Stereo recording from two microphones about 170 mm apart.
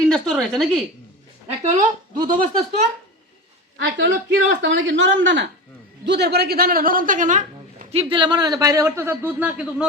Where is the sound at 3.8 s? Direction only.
80° right; by 7.8 s 50° right (ahead or behind).